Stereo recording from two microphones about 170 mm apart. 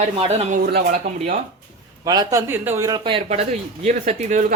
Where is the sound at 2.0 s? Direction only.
20° right (ahead or behind).